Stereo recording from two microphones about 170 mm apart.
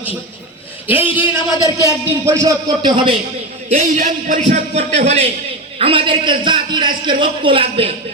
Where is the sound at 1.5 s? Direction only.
20° left (ahead or behind).